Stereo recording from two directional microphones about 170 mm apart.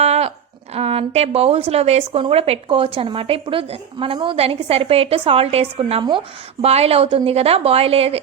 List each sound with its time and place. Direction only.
0.0 s a woman's voice: 40° right (ahead or behind)